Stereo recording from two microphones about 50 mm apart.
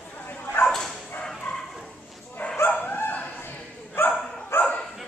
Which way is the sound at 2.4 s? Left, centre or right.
Left.